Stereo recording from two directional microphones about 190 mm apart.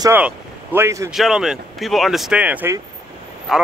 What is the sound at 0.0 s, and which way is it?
Speech, 10° right (ahead or behind).